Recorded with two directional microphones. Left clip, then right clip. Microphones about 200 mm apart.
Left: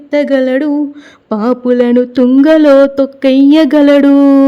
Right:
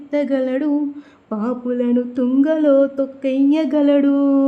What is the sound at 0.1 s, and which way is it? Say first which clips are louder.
Mantra: left 9 dB; 35° left (ahead or behind).